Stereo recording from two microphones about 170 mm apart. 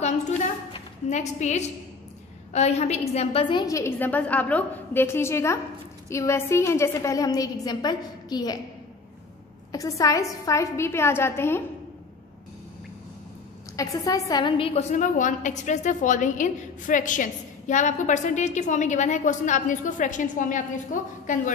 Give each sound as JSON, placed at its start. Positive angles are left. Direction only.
{"t": 1.1, "sound": "a woman's voice", "side_deg": 40}
{"t": 9.7, "sound": "a woman's voice", "side_deg": 20}
{"t": 13.7, "sound": "a woman's voice", "side_deg": 20}
{"t": 14.7, "sound": "a woman's voice", "side_deg": 45}